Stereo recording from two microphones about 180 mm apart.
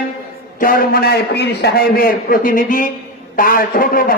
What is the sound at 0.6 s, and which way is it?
A man's voice, 50° left (ahead or behind).